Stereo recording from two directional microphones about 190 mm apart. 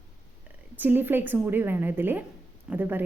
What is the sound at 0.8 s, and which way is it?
A woman's voice, 10° right (ahead or behind).